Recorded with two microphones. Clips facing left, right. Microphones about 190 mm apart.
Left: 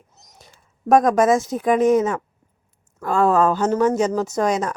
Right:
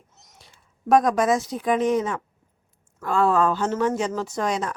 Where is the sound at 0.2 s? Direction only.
40° left (ahead or behind).